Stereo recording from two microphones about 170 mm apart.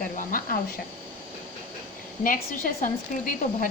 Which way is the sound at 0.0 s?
55° left (ahead or behind).